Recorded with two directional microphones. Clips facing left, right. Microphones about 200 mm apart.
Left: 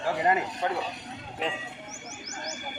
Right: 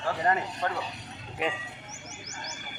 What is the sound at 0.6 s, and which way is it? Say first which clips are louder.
Speech: left 2 dB; 10° left (ahead or behind).